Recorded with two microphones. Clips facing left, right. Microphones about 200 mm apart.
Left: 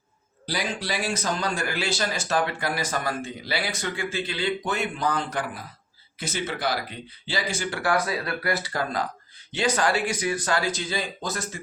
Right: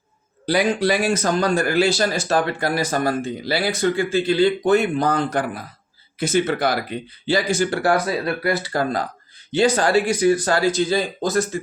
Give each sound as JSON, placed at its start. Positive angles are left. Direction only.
{"t": 0.4, "sound": "speech", "side_deg": -55}